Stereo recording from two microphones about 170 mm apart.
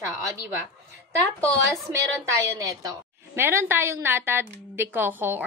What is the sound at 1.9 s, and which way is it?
A woman's voice, 15° right (ahead or behind).